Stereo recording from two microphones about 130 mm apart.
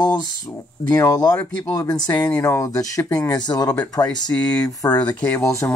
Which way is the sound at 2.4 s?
25° left (ahead or behind).